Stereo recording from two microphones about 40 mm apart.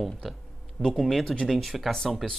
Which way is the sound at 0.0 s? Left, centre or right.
Centre.